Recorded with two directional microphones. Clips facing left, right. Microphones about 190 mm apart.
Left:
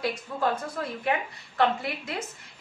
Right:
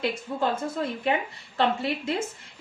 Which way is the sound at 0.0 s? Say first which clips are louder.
Right 1 dB; 25° right (ahead or behind).